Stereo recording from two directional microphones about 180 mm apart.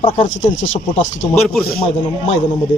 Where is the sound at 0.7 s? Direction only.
45° left (ahead or behind).